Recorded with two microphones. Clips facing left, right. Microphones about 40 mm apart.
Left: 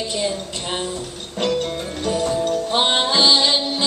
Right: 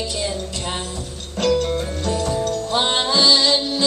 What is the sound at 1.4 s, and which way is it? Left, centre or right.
Music, centre.